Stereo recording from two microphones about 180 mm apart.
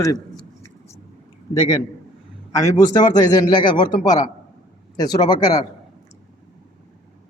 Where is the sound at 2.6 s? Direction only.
15° left (ahead or behind).